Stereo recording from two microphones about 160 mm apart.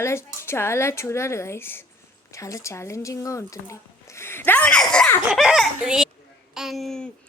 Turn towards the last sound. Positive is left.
turn(degrees=5)  # may be behind; listen again after turning